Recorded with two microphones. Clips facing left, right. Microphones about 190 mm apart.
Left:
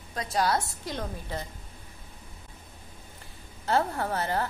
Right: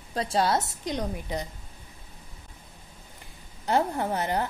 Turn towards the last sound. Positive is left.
turn(degrees=-20)  # may be behind; listen again after turning